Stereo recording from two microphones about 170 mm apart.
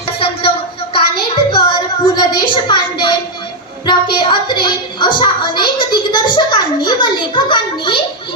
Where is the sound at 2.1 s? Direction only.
25° left (ahead or behind).